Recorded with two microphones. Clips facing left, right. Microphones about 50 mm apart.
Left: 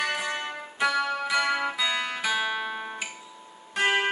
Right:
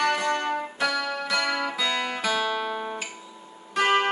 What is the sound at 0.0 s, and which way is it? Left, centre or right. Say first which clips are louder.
Music: right 5 dB; centre.